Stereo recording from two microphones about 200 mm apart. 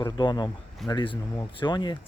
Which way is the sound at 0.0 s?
20° left (ahead or behind).